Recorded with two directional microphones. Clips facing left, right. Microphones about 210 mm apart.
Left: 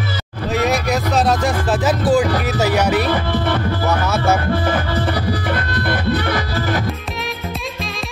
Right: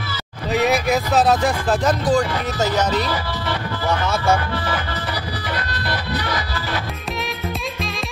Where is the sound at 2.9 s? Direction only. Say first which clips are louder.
Left 5 dB; 55° left (ahead or behind).